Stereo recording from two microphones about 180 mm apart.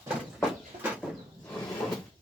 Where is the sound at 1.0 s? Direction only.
5° right (ahead or behind).